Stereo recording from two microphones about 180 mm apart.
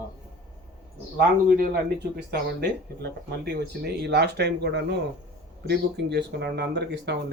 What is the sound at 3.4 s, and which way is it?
Speech, 65° right (ahead or behind).